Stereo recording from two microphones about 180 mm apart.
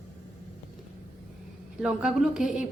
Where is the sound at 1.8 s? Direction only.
5° right (ahead or behind).